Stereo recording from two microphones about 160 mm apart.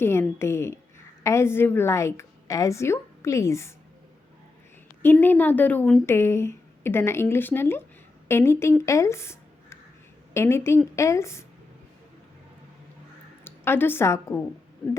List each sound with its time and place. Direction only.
0.0 s a woman's voice: 15° left (ahead or behind)
5.0 s a woman's voice: 10° left (ahead or behind)
8.9 s a sound: 20° left (ahead or behind)
10.3 s a woman's voice: 15° left (ahead or behind)
13.4 s a woman's voice: 15° left (ahead or behind)